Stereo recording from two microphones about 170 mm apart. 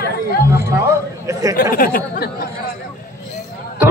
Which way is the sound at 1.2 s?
20° right (ahead or behind).